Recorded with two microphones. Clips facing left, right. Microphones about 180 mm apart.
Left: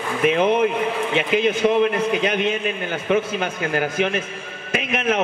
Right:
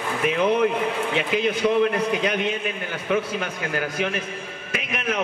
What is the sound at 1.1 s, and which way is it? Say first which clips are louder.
A man's voice: left 5 dB; 20° left (ahead or behind).